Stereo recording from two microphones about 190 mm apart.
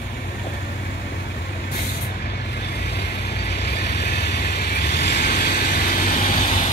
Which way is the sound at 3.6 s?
60° left (ahead or behind).